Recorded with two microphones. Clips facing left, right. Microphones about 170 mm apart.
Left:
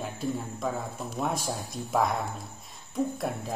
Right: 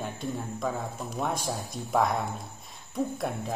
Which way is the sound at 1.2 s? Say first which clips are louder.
Even; centre (ahead or behind).